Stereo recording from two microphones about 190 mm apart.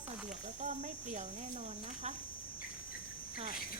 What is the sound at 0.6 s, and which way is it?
Speech, 40° right (ahead or behind).